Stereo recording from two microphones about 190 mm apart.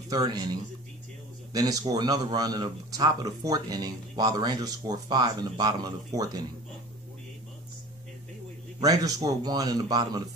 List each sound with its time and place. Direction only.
0.1 s a man's voice: 20° right (ahead or behind)
8.8 s a man's voice: 20° right (ahead or behind)